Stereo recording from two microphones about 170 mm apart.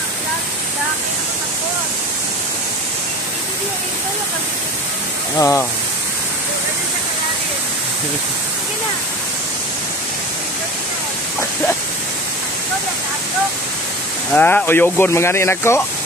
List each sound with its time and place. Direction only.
5.4 s speech: 15° left (ahead or behind)
14.3 s speech: 10° left (ahead or behind)